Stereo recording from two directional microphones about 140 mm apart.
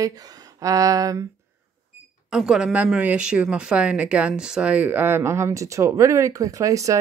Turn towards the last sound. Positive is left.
turn(degrees=-25)  # may be behind; listen again after turning